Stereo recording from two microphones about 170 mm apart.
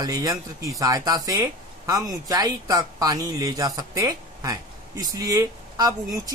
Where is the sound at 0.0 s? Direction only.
20° right (ahead or behind).